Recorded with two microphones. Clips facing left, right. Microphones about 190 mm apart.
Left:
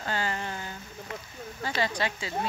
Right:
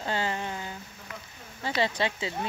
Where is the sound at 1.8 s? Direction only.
25° right (ahead or behind).